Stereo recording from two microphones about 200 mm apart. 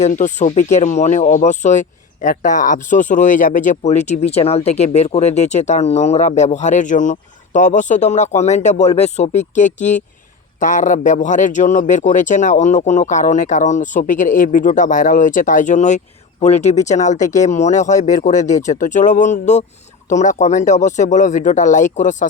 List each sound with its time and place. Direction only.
0.0 s speech: 40° left (ahead or behind)